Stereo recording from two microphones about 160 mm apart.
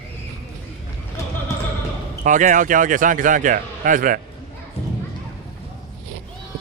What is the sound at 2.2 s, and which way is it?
Speech, 50° right (ahead or behind).